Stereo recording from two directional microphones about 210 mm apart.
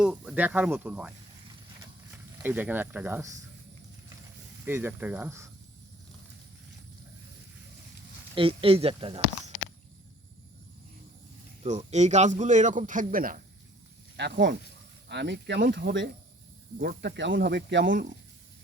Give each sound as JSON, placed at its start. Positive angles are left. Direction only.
{"t": 0.0, "sound": "speech", "side_deg": -5}
{"t": 2.4, "sound": "speech", "side_deg": -10}
{"t": 4.6, "sound": "speech", "side_deg": -10}
{"t": 8.4, "sound": "speech", "side_deg": -25}
{"t": 11.9, "sound": "a man's voice", "side_deg": -30}
{"t": 14.2, "sound": "speech", "side_deg": -55}
{"t": 16.7, "sound": "speech", "side_deg": -45}